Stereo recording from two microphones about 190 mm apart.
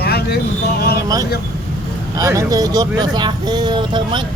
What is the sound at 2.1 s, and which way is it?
Speech, 15° right (ahead or behind).